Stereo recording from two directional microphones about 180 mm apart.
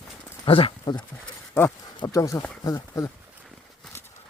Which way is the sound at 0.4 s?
30° left (ahead or behind).